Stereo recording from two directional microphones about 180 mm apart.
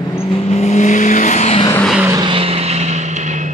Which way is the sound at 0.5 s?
40° left (ahead or behind).